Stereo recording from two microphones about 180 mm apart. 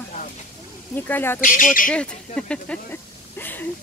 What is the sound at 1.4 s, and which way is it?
Speech, 50° left (ahead or behind).